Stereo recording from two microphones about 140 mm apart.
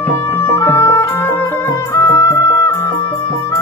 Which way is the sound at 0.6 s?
20° left (ahead or behind).